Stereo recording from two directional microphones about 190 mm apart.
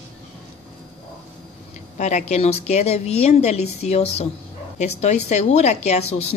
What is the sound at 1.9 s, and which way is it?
A woman's voice, 40° left (ahead or behind).